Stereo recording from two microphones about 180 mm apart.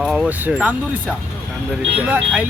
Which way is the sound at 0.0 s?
5° right (ahead or behind).